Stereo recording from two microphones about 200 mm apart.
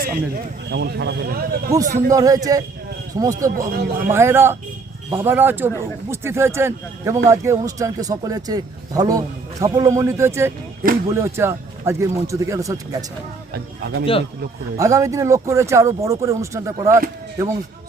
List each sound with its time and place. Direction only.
0.0 s a man's voice: 45° right (ahead or behind)
1.7 s speech: 15° right (ahead or behind)
13.5 s speech: 55° right (ahead or behind)
14.0 s speech: 30° left (ahead or behind)
14.8 s speech: 15° right (ahead or behind)